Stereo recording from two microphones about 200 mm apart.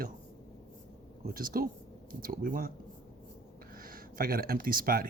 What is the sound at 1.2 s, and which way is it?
Speech, 45° right (ahead or behind).